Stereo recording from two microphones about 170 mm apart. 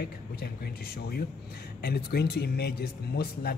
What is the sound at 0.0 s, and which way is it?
Speech, 65° left (ahead or behind).